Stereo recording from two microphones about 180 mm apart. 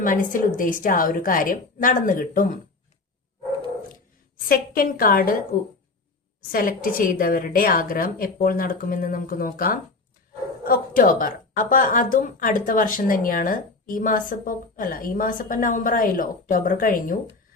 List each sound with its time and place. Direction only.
0.0 s a woman's voice: 50° left (ahead or behind)
4.4 s a woman's voice: 55° left (ahead or behind)
6.5 s a woman's voice: 50° left (ahead or behind)